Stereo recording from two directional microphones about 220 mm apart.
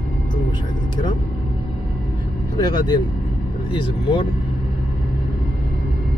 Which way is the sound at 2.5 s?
20° left (ahead or behind).